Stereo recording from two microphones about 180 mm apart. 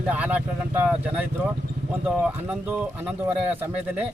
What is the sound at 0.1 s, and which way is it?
Speech, 10° right (ahead or behind).